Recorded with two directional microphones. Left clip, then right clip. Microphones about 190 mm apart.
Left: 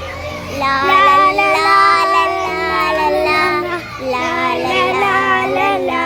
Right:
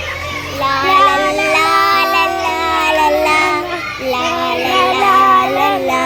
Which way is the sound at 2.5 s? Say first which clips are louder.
Right 2 dB; 30° right (ahead or behind).